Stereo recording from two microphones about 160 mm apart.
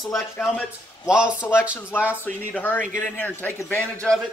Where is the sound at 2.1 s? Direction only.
10° left (ahead or behind).